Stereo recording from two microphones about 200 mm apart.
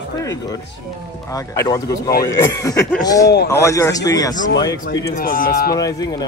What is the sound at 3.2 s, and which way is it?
Speech, 55° left (ahead or behind).